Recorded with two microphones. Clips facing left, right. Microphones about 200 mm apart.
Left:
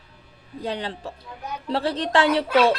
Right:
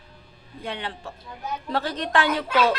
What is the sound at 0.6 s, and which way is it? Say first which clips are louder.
A woman's voice: left 4 dB; 35° left (ahead or behind).